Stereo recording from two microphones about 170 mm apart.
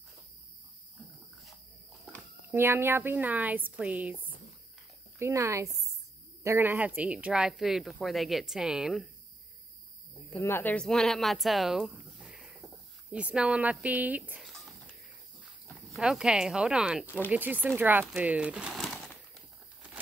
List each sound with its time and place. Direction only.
2.5 s speech: 15° right (ahead or behind)
5.2 s speech: 15° right (ahead or behind)
10.3 s speech: 10° left (ahead or behind); by 14.5 s 10° right (ahead or behind)
14.5 s a sound: centre (ahead or behind)
15.7 s speech: centre (ahead or behind)
17.0 s speech: 10° left (ahead or behind)
17.3 s speech: 10° right (ahead or behind)
18.1 s crumpling: 10° right (ahead or behind)